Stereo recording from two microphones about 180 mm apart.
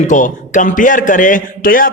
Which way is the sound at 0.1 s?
45° left (ahead or behind).